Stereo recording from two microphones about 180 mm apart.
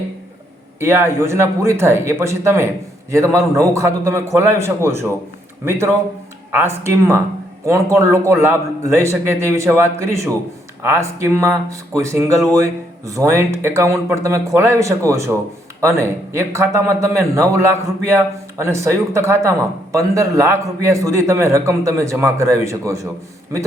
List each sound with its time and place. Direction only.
0.8 s a man's voice: 15° right (ahead or behind)